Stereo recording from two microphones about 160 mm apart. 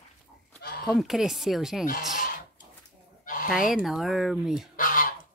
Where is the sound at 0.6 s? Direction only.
70° left (ahead or behind).